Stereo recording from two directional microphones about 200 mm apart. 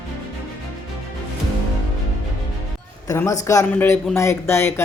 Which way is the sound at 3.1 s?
15° left (ahead or behind).